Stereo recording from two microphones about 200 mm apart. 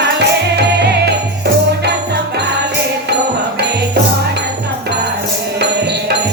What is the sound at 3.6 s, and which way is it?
Music, 55° right (ahead or behind).